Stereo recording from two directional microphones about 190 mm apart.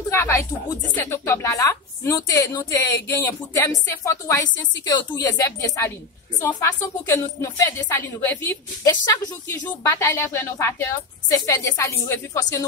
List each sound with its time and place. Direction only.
0.1 s a sound: 15° left (ahead or behind)
1.0 s a woman's voice: 15° left (ahead or behind)
8.8 s a woman's voice: 20° left (ahead or behind)